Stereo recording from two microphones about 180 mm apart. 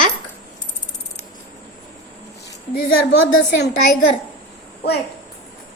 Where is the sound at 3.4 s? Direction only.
70° left (ahead or behind).